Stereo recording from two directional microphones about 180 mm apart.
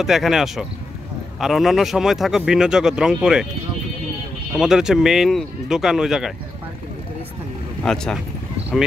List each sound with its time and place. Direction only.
0.0 s a man's voice: centre (ahead or behind)
4.6 s a man's voice: 5° right (ahead or behind)
7.8 s a man's voice: 5° left (ahead or behind)